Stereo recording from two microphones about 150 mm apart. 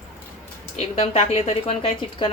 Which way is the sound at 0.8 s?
45° left (ahead or behind).